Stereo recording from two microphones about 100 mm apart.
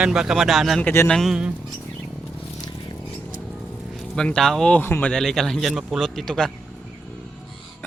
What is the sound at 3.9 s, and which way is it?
Speech, 10° left (ahead or behind).